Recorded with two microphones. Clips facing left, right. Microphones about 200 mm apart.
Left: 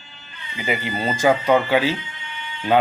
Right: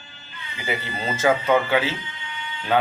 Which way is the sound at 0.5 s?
15° left (ahead or behind).